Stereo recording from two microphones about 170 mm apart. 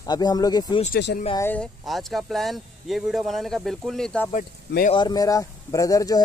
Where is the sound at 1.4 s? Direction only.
10° left (ahead or behind).